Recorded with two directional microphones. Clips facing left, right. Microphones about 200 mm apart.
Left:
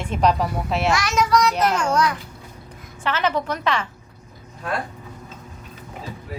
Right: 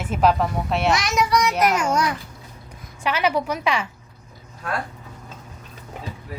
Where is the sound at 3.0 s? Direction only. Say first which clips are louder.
Right 1 dB; 10° right (ahead or behind).